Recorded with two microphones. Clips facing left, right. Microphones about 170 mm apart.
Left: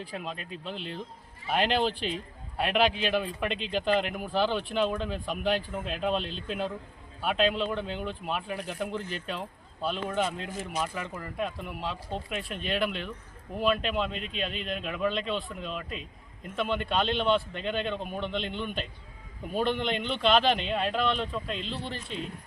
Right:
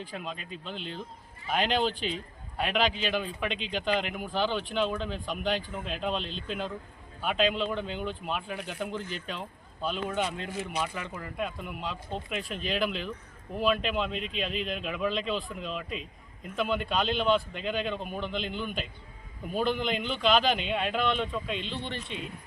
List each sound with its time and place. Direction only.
0.0 s speech: centre (ahead or behind)
8.5 s speech: 40° left (ahead or behind)
8.8 s speech: centre (ahead or behind)
10.5 s speech: 45° left (ahead or behind)
10.8 s speech: centre (ahead or behind)